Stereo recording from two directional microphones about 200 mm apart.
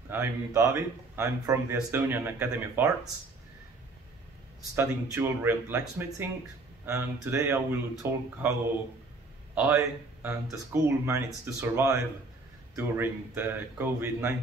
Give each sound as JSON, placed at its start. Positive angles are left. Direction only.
{"t": 0.1, "sound": "speech", "side_deg": -10}
{"t": 4.7, "sound": "speech", "side_deg": -10}
{"t": 10.2, "sound": "speech", "side_deg": -15}